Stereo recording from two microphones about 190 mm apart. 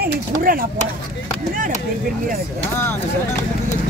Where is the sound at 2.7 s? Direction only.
10° left (ahead or behind).